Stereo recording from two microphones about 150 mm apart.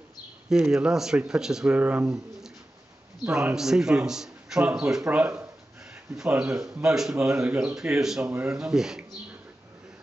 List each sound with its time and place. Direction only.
0.5 s a man's voice: 5° right (ahead or behind)